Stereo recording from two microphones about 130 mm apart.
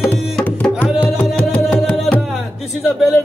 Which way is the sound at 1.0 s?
10° left (ahead or behind).